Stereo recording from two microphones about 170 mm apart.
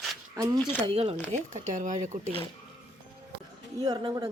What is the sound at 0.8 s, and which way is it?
Speech, 35° right (ahead or behind).